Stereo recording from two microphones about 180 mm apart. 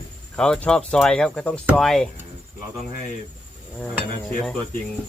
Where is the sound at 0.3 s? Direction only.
5° left (ahead or behind).